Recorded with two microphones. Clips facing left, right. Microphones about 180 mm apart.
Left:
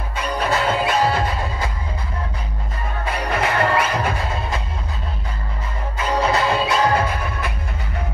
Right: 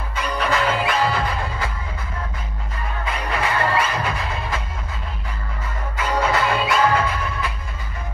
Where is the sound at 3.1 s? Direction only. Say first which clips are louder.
Left 3 dB; 60° left (ahead or behind).